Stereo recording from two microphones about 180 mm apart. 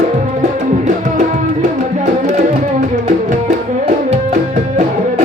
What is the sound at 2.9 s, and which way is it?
Music, 40° right (ahead or behind).